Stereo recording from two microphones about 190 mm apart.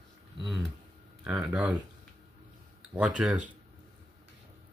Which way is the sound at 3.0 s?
5° right (ahead or behind).